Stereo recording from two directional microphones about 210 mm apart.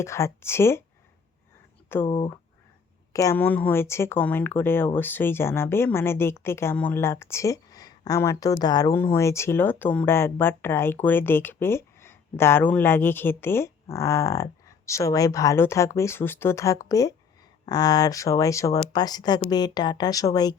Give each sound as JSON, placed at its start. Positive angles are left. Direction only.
{"t": 0.0, "sound": "a woman's voice", "side_deg": 15}
{"t": 2.0, "sound": "a woman's voice", "side_deg": 25}